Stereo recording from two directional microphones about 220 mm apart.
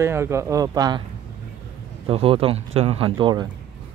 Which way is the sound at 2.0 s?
25° right (ahead or behind).